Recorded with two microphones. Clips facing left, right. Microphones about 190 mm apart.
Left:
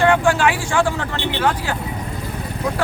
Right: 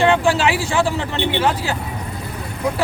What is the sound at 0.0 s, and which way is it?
Speech, 25° right (ahead or behind).